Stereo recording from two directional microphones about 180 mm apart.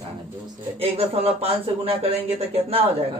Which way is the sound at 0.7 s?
35° right (ahead or behind).